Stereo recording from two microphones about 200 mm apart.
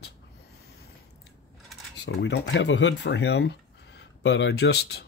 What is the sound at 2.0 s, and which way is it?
Speech, 60° left (ahead or behind).